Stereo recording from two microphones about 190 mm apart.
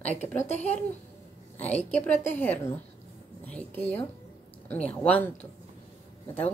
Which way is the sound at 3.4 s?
10° left (ahead or behind).